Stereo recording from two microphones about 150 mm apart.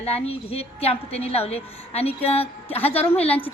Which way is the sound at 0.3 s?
40° left (ahead or behind).